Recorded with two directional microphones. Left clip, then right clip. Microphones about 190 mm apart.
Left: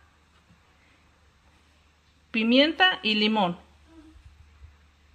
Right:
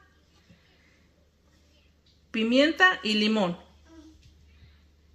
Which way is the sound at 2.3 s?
40° left (ahead or behind).